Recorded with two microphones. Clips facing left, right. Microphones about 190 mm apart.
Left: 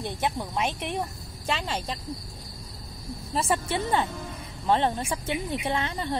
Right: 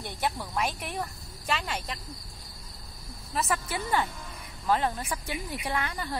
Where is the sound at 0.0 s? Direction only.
20° left (ahead or behind).